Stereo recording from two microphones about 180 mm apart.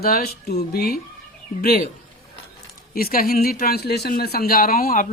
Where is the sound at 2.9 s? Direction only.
55° left (ahead or behind).